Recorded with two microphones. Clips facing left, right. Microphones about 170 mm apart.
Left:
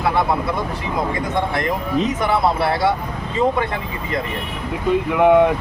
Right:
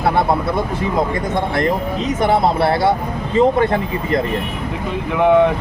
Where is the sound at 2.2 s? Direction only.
30° right (ahead or behind).